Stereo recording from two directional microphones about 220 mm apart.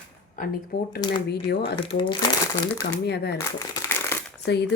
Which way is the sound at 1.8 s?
25° left (ahead or behind).